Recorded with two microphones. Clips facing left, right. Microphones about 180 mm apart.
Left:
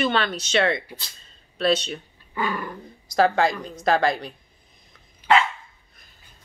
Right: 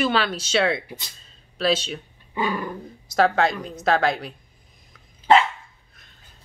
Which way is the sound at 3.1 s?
Centre (ahead or behind).